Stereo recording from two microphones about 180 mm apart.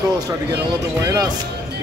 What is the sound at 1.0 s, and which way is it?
Speech, 15° right (ahead or behind).